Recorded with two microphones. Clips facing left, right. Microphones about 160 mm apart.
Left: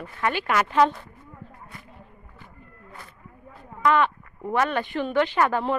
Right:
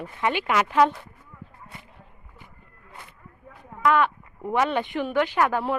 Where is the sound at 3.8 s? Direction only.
5° right (ahead or behind).